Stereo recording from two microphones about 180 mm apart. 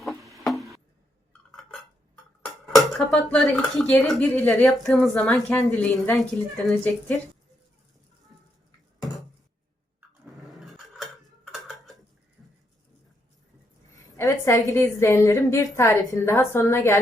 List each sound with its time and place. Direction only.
0.0 s a sound: centre (ahead or behind)
2.4 s speech: centre (ahead or behind)
4.3 s a woman's voice: 15° left (ahead or behind)
4.6 s a woman's voice: centre (ahead or behind)
10.5 s cutlery: centre (ahead or behind)
12.4 s a sound: 5° right (ahead or behind)
13.9 s a woman's voice: 15° left (ahead or behind)